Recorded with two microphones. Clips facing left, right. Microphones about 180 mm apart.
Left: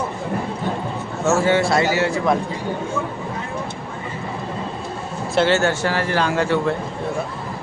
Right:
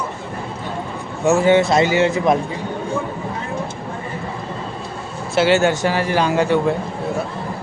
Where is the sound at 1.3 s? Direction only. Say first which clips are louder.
Right 3 dB; 15° right (ahead or behind).